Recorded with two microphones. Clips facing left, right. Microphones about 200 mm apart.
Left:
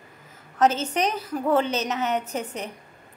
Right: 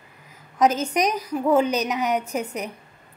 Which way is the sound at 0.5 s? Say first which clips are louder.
Right 2 dB; 10° right (ahead or behind).